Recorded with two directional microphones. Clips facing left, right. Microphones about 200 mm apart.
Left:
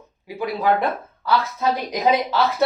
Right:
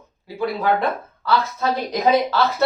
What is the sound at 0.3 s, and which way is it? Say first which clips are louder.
Speech: right 1 dB; 15° left (ahead or behind).